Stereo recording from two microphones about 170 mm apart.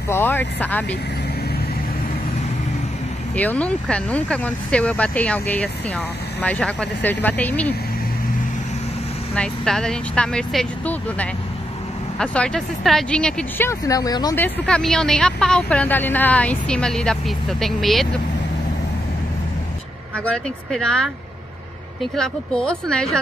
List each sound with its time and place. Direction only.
0.1 s speech: 10° left (ahead or behind)
3.3 s speech: 10° left (ahead or behind)
9.3 s speech: 5° left (ahead or behind)
13.7 s speech: 20° left (ahead or behind)
14.3 s speech: 10° left (ahead or behind)
20.2 s speech: 5° left (ahead or behind)
22.1 s speech: 5° left (ahead or behind)